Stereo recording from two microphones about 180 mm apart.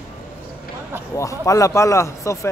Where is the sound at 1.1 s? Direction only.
15° left (ahead or behind).